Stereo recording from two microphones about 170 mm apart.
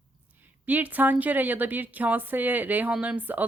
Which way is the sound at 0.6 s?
10° right (ahead or behind).